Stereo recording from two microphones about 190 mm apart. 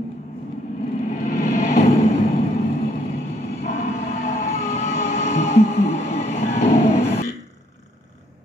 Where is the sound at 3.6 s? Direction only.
35° left (ahead or behind).